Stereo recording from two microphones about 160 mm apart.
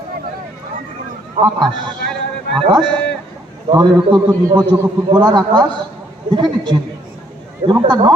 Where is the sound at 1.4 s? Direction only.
50° right (ahead or behind).